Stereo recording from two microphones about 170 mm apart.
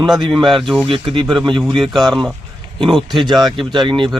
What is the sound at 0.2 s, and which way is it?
Speech, 25° right (ahead or behind).